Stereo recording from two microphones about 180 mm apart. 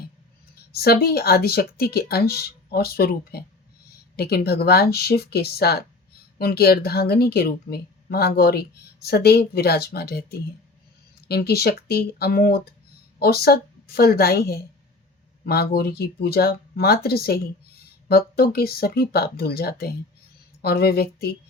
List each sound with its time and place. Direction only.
0.7 s speech: 60° left (ahead or behind)